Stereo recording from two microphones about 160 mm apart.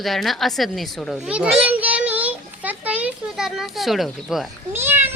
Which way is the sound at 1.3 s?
5° right (ahead or behind).